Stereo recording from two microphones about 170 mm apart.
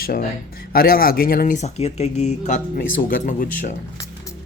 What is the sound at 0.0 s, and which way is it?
Speech, 60° left (ahead or behind).